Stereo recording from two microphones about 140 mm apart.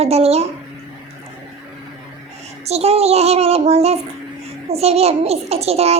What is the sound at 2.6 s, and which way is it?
A child's voice, 50° right (ahead or behind).